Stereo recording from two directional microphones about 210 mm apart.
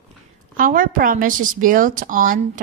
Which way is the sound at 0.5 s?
40° right (ahead or behind).